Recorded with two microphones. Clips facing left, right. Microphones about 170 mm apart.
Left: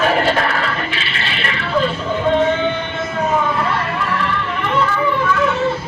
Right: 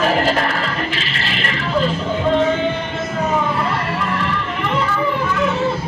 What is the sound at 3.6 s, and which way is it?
Children playing, 35° right (ahead or behind).